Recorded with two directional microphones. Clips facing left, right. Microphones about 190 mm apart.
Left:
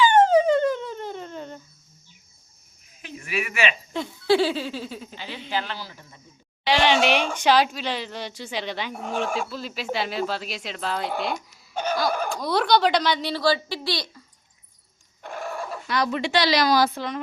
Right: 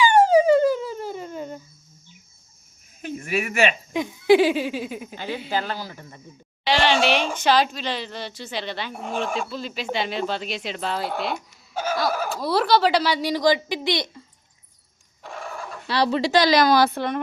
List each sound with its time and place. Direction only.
0.0 s a sound: 10° right (ahead or behind)
3.0 s a sound: 45° right (ahead or behind)
3.9 s giggle: 15° right (ahead or behind)
5.1 s a woman's voice: 50° right (ahead or behind)
6.7 s speech: 10° left (ahead or behind)
8.9 s giggle: 10° right (ahead or behind)
9.1 s speech: 10° left (ahead or behind); by 14.2 s 20° right (ahead or behind)
15.2 s a sound: centre (ahead or behind)
15.9 s speech: 30° right (ahead or behind)
16.3 s a woman's voice: 45° right (ahead or behind)